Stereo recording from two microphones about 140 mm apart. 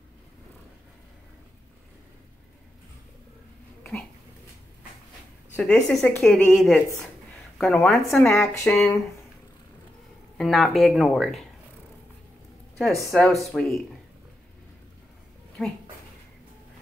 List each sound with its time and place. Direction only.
5.6 s speech: 5° left (ahead or behind)
8.1 s speech: 20° left (ahead or behind)
8.6 s speech: centre (ahead or behind)
10.3 s speech: centre (ahead or behind)
12.7 s speech: centre (ahead or behind)